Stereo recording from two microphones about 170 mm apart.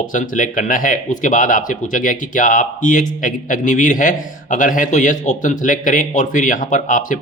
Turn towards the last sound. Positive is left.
turn(degrees=50)  # may be behind; listen again after turning